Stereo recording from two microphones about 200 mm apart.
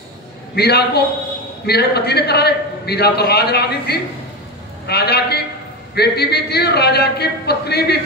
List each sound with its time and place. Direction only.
0.6 s a man's voice: 55° left (ahead or behind)